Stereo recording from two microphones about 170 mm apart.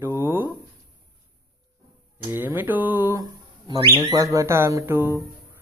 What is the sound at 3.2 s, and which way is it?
Speech, 25° right (ahead or behind).